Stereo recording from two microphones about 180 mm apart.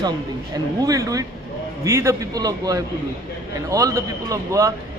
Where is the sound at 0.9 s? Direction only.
20° right (ahead or behind).